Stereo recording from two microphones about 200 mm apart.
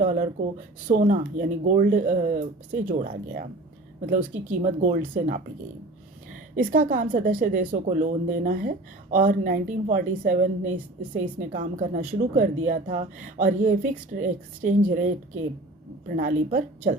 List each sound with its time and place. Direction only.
0.0 s a woman's voice: 40° right (ahead or behind)
6.6 s a woman's voice: 45° right (ahead or behind)